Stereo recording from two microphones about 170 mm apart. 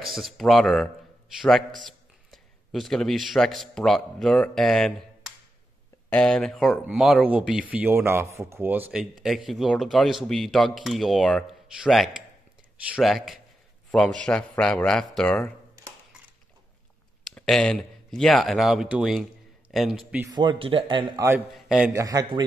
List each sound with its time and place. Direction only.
0.0 s speech: centre (ahead or behind)
1.9 s speech: centre (ahead or behind)
9.5 s speech: centre (ahead or behind)
17.3 s speech: 5° left (ahead or behind)
20.2 s speech: 25° right (ahead or behind)
21.5 s a man's voice: centre (ahead or behind)
21.9 s speech: 20° right (ahead or behind)